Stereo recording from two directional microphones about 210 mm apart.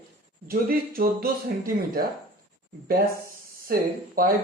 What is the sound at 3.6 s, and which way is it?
Speech, 45° right (ahead or behind).